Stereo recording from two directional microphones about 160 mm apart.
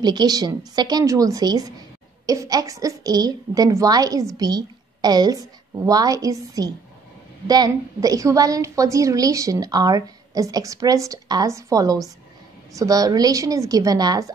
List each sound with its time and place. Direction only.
0.0 s a woman's voice: 25° right (ahead or behind)